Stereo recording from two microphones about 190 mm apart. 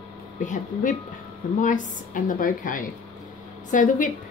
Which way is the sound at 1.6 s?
40° left (ahead or behind).